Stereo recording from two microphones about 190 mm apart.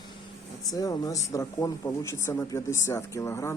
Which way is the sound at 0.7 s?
20° left (ahead or behind).